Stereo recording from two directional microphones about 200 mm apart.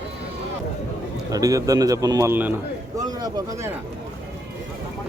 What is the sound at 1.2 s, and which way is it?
A man's voice, 15° right (ahead or behind).